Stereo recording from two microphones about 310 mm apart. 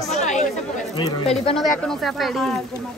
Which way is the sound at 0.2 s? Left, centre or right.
Left.